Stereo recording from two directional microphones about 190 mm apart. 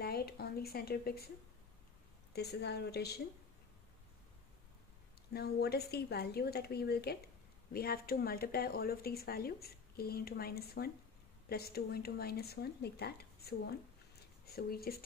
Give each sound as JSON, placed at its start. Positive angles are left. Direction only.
{"t": 0.0, "sound": "a sound", "side_deg": 55}
{"t": 2.3, "sound": "speech", "side_deg": 60}
{"t": 5.3, "sound": "speech", "side_deg": 55}